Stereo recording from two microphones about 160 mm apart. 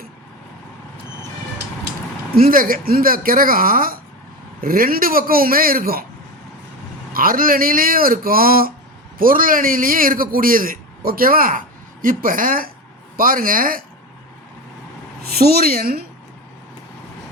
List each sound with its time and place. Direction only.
2.3 s a man's voice: 65° right (ahead or behind)
7.1 s a man's voice: 65° right (ahead or behind)
15.2 s a woman's voice: 75° right (ahead or behind)